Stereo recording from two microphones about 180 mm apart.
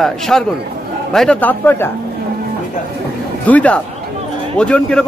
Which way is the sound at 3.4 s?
10° left (ahead or behind).